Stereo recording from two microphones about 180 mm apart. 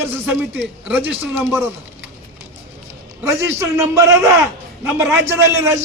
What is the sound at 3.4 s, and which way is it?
Speech, 15° right (ahead or behind).